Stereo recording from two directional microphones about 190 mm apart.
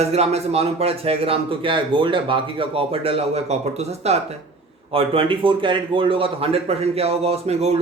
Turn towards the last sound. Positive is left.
turn(degrees=-35)  # may be behind; listen again after turning